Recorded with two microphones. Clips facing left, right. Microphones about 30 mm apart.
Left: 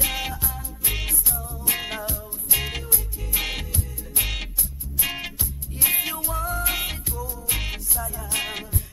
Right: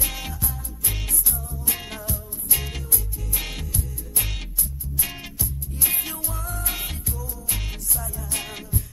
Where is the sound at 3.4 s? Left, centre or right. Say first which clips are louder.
Left 4 dB; left.